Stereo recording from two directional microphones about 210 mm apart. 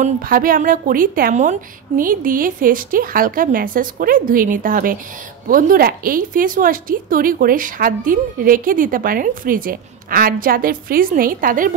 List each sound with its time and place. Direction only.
0.0 s a woman's voice: 40° right (ahead or behind)